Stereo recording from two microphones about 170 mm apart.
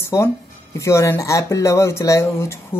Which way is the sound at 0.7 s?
15° left (ahead or behind).